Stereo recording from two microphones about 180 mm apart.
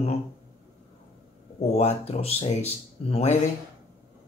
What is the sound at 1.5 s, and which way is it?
Speech, 35° left (ahead or behind).